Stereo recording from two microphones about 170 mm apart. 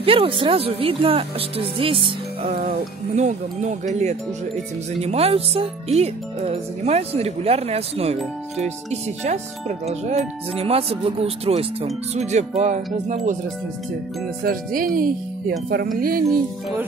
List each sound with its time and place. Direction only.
0.0 s speech: 35° right (ahead or behind)
3.2 s speech: 45° right (ahead or behind)
14.4 s speech: 55° right (ahead or behind)